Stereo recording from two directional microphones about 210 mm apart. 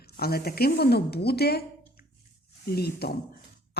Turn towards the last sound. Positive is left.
turn(degrees=50)  # may be behind; listen again after turning